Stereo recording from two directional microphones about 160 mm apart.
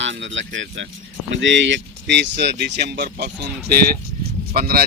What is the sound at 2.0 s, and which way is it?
Speech, 90° right.